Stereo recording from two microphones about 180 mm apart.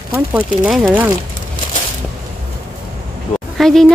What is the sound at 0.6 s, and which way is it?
Speech, 5° right (ahead or behind).